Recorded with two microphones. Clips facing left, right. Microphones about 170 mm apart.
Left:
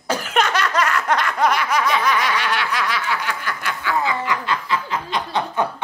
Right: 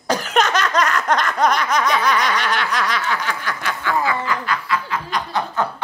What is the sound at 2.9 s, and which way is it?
Snicker, 10° left (ahead or behind).